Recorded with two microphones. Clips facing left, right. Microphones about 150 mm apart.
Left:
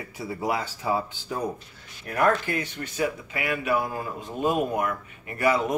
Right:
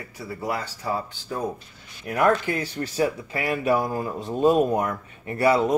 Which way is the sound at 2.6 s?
35° right (ahead or behind).